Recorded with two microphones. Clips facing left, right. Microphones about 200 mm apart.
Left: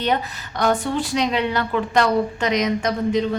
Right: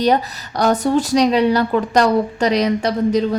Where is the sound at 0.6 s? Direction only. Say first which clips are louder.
Right 5 dB; 40° right (ahead or behind).